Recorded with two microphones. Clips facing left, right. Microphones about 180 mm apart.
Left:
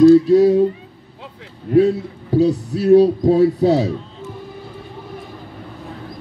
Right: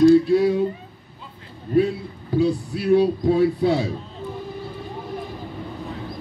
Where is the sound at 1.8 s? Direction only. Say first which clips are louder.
Left 6 dB; 40° left (ahead or behind).